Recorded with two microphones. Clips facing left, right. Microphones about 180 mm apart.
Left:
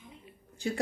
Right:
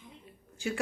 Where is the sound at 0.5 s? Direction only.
35° left (ahead or behind).